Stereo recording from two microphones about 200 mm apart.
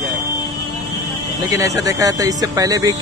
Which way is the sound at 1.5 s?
15° right (ahead or behind).